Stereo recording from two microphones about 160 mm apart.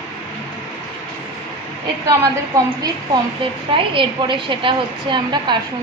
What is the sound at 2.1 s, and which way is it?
A woman's voice, 25° right (ahead or behind).